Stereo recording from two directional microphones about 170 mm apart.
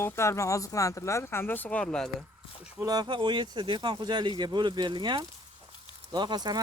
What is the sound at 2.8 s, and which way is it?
Speech, 25° right (ahead or behind).